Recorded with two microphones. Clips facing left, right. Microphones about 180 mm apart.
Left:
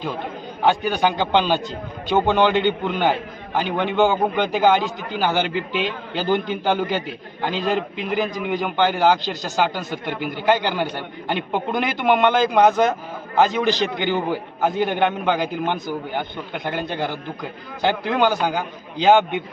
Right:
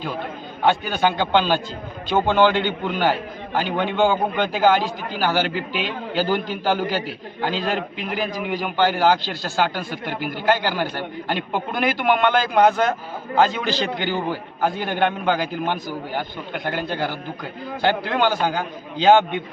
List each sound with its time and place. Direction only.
0.6 s a man's voice: 15° left (ahead or behind)
16.6 s a man's voice: 15° left (ahead or behind)
18.2 s a man's voice: 15° left (ahead or behind)